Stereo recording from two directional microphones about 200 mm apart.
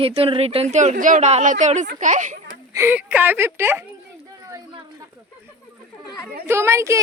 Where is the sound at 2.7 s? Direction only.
10° right (ahead or behind).